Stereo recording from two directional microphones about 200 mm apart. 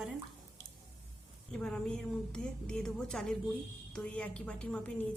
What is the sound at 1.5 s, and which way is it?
A woman's voice, 5° left (ahead or behind).